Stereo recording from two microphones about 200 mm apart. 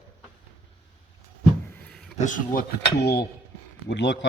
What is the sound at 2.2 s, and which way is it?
Speech, 40° left (ahead or behind).